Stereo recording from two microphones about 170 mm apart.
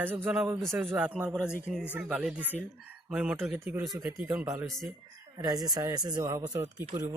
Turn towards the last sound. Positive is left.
turn(degrees=-20)  # may be behind; listen again after turning